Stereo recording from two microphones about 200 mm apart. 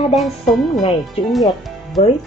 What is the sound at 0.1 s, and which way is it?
Speech, centre (ahead or behind).